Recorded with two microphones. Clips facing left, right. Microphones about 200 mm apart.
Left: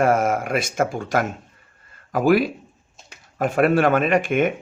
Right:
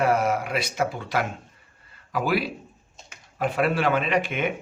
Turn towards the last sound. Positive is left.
turn(degrees=50)  # may be behind; listen again after turning